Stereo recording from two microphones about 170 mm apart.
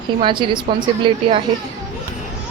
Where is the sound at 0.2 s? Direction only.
30° right (ahead or behind).